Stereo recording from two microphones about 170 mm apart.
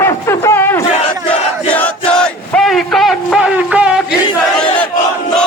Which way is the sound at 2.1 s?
5° left (ahead or behind).